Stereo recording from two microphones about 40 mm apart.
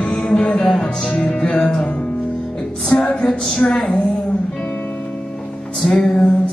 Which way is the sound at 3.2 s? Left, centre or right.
Centre.